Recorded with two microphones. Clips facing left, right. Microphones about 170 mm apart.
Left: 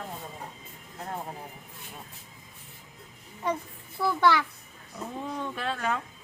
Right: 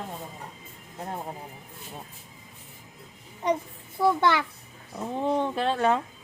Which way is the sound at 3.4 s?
20° right (ahead or behind).